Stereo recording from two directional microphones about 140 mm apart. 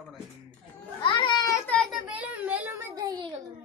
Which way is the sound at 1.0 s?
35° left (ahead or behind).